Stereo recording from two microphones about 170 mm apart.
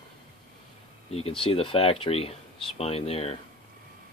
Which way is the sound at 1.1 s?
35° left (ahead or behind).